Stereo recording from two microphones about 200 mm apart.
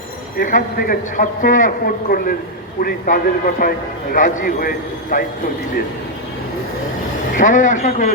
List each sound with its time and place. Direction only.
0.3 s speech: 45° left (ahead or behind)
7.3 s speech: 40° left (ahead or behind)